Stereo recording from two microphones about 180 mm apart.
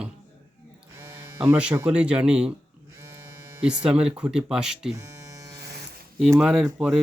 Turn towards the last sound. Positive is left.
turn(degrees=-5)  # may be behind; listen again after turning